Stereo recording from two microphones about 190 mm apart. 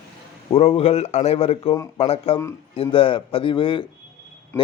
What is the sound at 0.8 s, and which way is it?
A man's voice, 30° left (ahead or behind).